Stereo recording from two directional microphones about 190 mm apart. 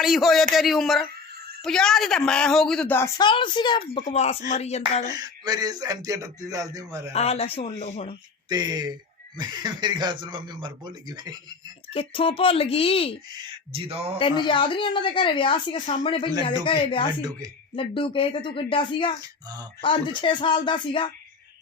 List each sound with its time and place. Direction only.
0.0 s a woman's voice: centre (ahead or behind)
3.2 s a woman's voice: 25° left (ahead or behind)
5.1 s speech: 20° right (ahead or behind)
7.1 s speech: 30° left (ahead or behind)
8.4 s speech: 20° right (ahead or behind)
11.9 s a woman's voice: 30° left (ahead or behind)
13.3 s speech: 25° right (ahead or behind)
14.2 s a woman's voice: 25° left (ahead or behind)